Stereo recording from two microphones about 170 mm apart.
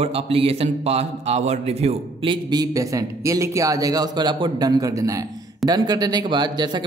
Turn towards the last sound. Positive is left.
turn(degrees=-25)  # may be behind; listen again after turning